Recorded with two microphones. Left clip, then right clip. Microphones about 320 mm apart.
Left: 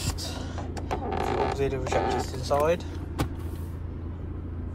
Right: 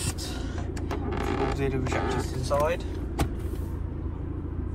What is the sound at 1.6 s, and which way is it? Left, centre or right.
Speech, centre.